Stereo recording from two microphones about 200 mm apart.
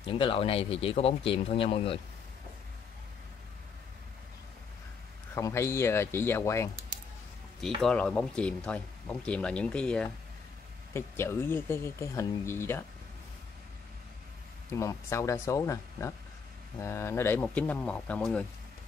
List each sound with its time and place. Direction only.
0.1 s speech: 30° left (ahead or behind)
5.3 s speech: 15° left (ahead or behind)
14.7 s speech: 15° left (ahead or behind)